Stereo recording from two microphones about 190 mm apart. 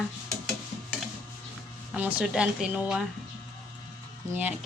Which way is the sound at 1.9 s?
5° right (ahead or behind).